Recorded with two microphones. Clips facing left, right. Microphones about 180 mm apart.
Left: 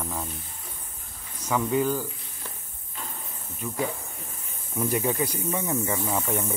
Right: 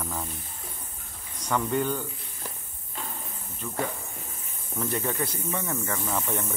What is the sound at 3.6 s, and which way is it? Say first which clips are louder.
Speech: left 2 dB; 15° left (ahead or behind).